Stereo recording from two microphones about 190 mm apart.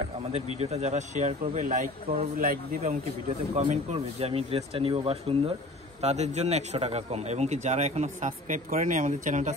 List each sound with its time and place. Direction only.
0.3 s a man's voice: 35° right (ahead or behind)
2.8 s a man's voice: 35° right (ahead or behind)